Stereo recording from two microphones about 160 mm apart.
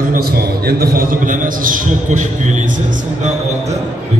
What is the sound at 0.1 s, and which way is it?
A man's voice, 70° right (ahead or behind).